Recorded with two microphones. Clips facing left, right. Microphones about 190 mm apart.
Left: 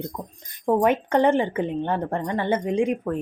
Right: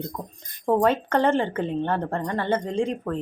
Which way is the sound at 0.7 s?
15° left (ahead or behind).